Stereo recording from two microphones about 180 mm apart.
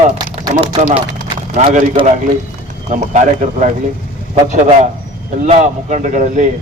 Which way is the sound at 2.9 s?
45° right (ahead or behind).